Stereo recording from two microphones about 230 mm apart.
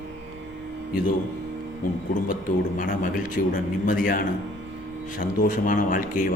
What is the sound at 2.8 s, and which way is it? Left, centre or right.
A man's voice, left.